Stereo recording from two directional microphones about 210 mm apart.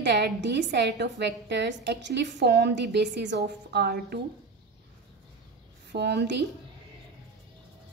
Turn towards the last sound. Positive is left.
turn(degrees=-55)  # may be behind; listen again after turning